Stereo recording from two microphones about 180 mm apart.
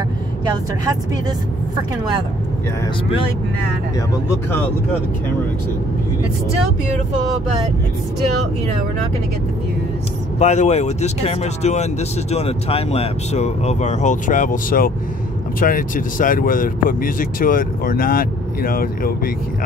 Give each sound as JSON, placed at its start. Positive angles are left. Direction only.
{"t": 10.4, "sound": "speech", "side_deg": 40}